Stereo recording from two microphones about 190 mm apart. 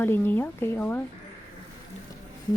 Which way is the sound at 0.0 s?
10° left (ahead or behind).